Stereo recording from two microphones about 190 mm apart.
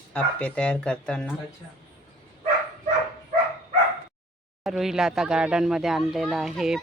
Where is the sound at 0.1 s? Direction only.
5° left (ahead or behind).